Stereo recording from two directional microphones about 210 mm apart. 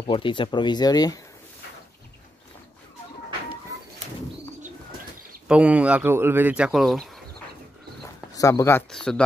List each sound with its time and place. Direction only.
0.0 s speech: 25° left (ahead or behind)
5.5 s speech: 5° right (ahead or behind)
8.4 s speech: 15° left (ahead or behind)